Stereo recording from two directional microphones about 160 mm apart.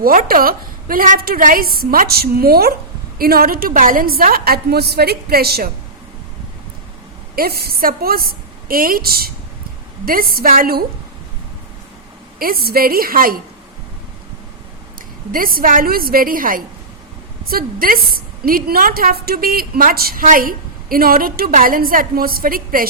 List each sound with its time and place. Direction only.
0.0 s a woman's voice: 65° right (ahead or behind)
7.3 s a woman's voice: 70° right (ahead or behind)
12.4 s a woman's voice: 70° right (ahead or behind)
15.3 s a woman's voice: 65° right (ahead or behind)